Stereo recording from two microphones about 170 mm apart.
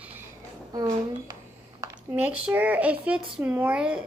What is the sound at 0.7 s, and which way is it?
Speech, 25° right (ahead or behind).